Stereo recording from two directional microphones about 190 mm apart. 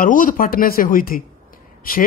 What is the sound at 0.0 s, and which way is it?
Speech, 45° left (ahead or behind).